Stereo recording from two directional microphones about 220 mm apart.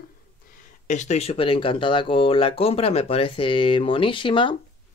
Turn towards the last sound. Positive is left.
turn(degrees=20)  # may be behind; listen again after turning